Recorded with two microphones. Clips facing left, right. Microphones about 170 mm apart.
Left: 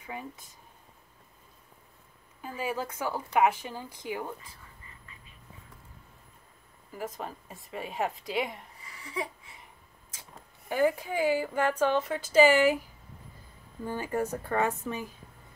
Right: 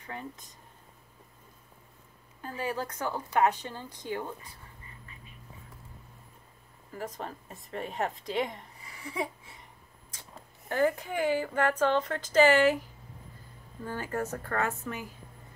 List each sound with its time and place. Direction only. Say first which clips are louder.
0.0 s a woman's voice: left 1 dB; 10° left (ahead or behind)
2.4 s a woman's voice: even; 10° left (ahead or behind)
6.9 s a woman's voice: left 1 dB; 5° left (ahead or behind)
10.7 s a woman's voice: left 1 dB; 10° left (ahead or behind)
13.8 s a woman's voice: left 3 dB; 15° left (ahead or behind)